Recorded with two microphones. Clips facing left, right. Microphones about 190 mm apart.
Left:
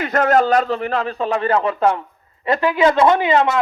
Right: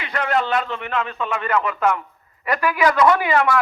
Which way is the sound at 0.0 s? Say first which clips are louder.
Left 7 dB; 45° left (ahead or behind).